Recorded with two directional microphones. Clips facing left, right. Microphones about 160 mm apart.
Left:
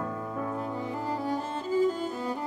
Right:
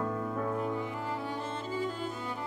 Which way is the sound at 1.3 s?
40° left (ahead or behind).